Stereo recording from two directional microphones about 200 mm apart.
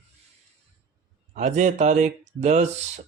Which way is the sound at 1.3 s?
40° right (ahead or behind).